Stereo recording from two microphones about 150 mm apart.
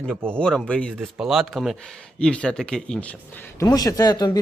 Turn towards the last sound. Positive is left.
turn(degrees=25)  # may be behind; listen again after turning